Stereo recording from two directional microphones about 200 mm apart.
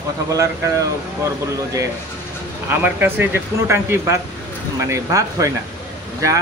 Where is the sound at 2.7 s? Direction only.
10° right (ahead or behind).